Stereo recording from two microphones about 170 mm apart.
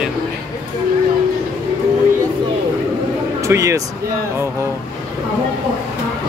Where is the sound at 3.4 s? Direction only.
15° right (ahead or behind).